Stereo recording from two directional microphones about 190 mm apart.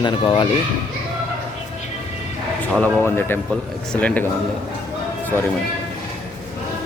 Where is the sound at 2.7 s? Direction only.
10° left (ahead or behind).